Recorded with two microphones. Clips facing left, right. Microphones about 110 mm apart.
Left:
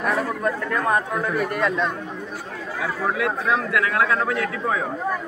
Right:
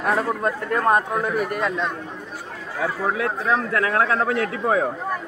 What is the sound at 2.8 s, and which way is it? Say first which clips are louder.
A man's voice: right 1 dB; 35° right (ahead or behind).